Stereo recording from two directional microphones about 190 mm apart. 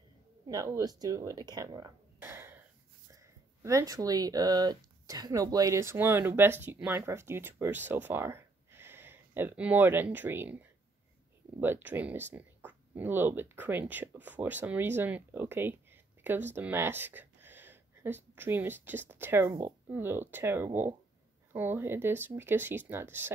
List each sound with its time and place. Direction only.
0.5 s speech: 15° right (ahead or behind)
3.6 s speech: 15° right (ahead or behind)